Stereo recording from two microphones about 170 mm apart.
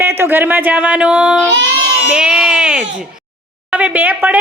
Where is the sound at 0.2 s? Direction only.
10° right (ahead or behind).